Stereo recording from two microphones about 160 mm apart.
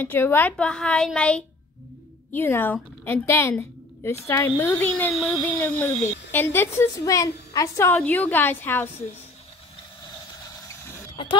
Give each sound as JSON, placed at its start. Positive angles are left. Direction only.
{"t": 0.0, "sound": "a woman's voice", "side_deg": 10}